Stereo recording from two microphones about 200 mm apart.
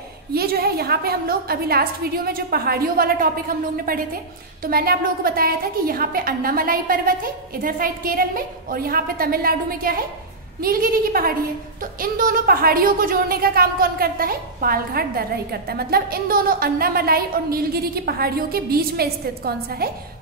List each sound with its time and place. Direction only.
0.3 s a woman's voice: 50° right (ahead or behind)